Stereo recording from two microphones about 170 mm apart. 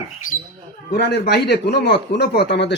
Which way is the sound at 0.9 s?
75° left (ahead or behind).